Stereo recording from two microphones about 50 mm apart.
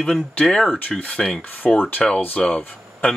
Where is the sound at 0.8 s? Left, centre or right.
Left.